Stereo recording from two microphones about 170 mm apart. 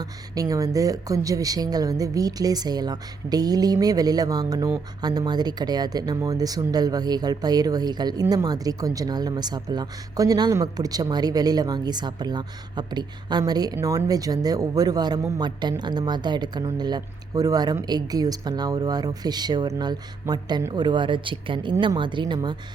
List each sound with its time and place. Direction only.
0.0 s speech: 20° right (ahead or behind)